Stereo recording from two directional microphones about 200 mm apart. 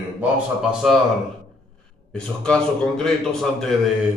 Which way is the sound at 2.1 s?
5° left (ahead or behind).